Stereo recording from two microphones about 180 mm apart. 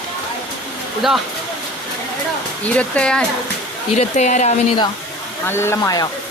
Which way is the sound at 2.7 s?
5° left (ahead or behind).